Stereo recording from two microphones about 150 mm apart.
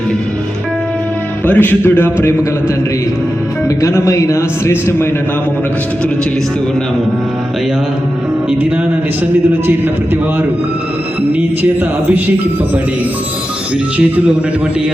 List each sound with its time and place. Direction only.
1.5 s speech: 15° left (ahead or behind)
3.8 s a man's voice: 20° left (ahead or behind)